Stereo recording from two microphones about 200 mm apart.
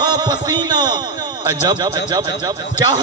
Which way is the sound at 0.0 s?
20° right (ahead or behind).